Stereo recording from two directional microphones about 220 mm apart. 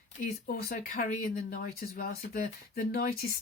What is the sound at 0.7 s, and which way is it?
Speech, 40° left (ahead or behind).